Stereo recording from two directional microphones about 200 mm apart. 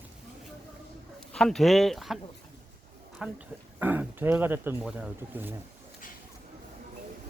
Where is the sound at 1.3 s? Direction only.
Centre (ahead or behind).